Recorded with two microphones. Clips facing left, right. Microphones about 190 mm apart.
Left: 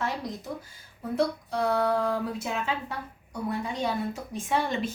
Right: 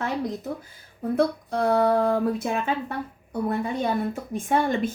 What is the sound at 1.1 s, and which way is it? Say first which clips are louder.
Speech: right 4 dB; 55° right (ahead or behind).